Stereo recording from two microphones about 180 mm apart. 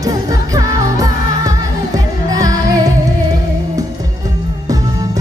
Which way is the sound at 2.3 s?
20° right (ahead or behind).